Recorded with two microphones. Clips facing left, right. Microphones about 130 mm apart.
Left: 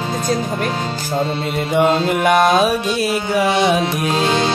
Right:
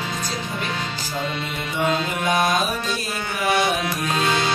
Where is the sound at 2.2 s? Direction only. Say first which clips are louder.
Left 8 dB; 75° left (ahead or behind).